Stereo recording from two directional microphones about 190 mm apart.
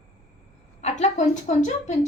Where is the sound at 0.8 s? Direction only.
40° left (ahead or behind).